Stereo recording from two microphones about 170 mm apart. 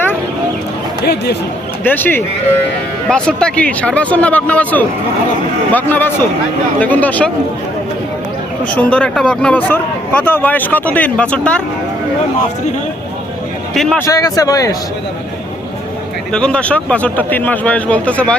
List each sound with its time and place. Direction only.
1.0 s speech: 75° left (ahead or behind)
1.8 s speech: 10° left (ahead or behind)
8.6 s speech: 10° left (ahead or behind)
14.0 s a man's voice: 20° left (ahead or behind)
16.3 s speech: 5° left (ahead or behind)